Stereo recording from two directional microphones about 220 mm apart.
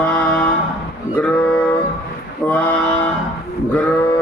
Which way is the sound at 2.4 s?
5° left (ahead or behind).